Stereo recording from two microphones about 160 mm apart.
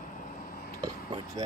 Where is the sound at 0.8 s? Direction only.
25° right (ahead or behind).